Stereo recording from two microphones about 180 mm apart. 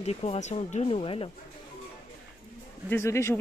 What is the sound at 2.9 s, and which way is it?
Speech, 15° left (ahead or behind).